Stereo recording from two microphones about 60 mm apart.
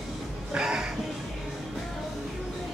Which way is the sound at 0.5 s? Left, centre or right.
Centre.